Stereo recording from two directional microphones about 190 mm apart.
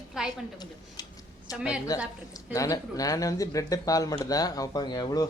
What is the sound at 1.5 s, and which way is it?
Speech, 5° right (ahead or behind).